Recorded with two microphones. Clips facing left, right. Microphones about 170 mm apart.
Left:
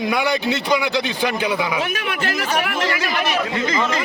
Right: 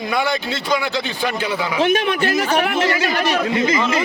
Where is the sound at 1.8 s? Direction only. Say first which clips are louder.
Right 7 dB; 30° right (ahead or behind).